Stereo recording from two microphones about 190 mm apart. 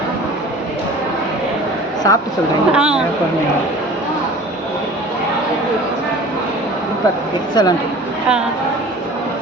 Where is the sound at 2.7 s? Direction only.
5° right (ahead or behind).